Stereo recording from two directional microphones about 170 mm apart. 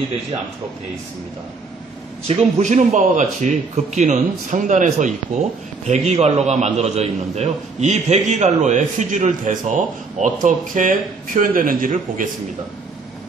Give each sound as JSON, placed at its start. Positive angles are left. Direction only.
{"t": 2.2, "sound": "a man's voice", "side_deg": -40}